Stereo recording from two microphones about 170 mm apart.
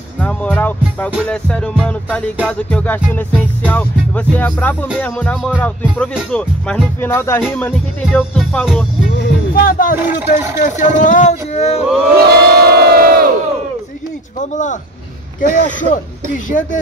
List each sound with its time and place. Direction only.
0.2 s music: 10° left (ahead or behind)
9.2 s music: 55° left (ahead or behind)
10.0 s speech: 15° right (ahead or behind)
10.6 s speech: 50° left (ahead or behind)
12.2 s crowd: 70° right (ahead or behind)
14.4 s speech: 45° left (ahead or behind)